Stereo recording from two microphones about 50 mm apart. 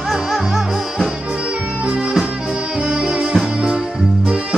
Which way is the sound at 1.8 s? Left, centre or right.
Centre.